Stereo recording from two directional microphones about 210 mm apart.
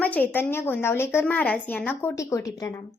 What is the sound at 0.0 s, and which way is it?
A woman's voice, 5° left (ahead or behind).